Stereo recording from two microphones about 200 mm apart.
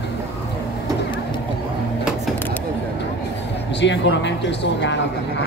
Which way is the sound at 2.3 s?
10° left (ahead or behind).